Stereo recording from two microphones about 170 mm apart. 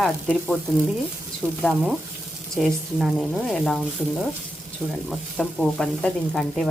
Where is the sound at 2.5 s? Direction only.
Centre (ahead or behind).